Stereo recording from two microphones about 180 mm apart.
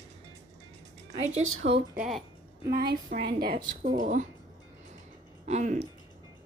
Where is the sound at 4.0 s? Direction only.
45° right (ahead or behind).